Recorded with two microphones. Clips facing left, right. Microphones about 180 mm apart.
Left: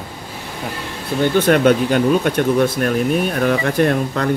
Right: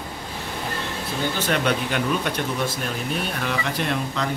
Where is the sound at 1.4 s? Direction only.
50° left (ahead or behind).